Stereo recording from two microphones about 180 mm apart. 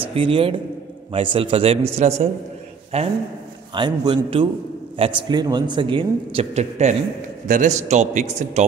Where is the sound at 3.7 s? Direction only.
25° right (ahead or behind).